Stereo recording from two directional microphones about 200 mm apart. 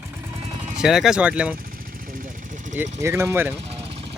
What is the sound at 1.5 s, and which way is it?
Vehicle, 45° right (ahead or behind).